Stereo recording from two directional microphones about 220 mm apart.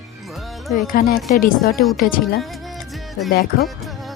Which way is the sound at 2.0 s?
40° left (ahead or behind).